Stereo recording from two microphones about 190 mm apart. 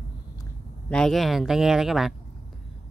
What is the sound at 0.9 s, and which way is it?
Speech, 5° left (ahead or behind).